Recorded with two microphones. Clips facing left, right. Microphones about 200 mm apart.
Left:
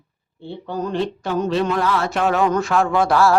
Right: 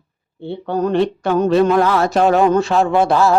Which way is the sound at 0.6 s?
65° right (ahead or behind).